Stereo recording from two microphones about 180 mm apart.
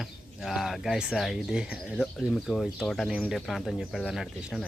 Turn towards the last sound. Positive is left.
turn(degrees=0)  # may be behind; listen again after turning